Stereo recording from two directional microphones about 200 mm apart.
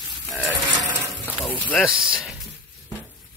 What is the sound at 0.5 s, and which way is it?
Mechanisms, 20° right (ahead or behind).